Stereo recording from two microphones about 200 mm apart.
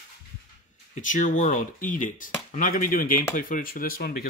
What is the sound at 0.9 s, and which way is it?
Speech, 40° left (ahead or behind).